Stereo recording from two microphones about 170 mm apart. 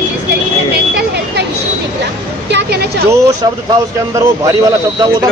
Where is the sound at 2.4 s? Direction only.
80° right.